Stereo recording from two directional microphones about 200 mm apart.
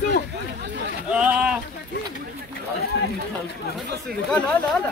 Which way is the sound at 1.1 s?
5° right (ahead or behind).